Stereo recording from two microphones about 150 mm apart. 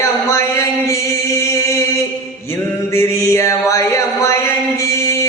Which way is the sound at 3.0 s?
20° left (ahead or behind).